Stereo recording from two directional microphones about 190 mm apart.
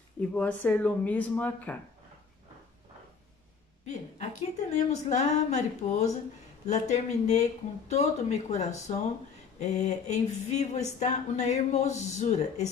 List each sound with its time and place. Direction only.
0.3 s speech: 5° left (ahead or behind)
3.8 s speech: 35° left (ahead or behind)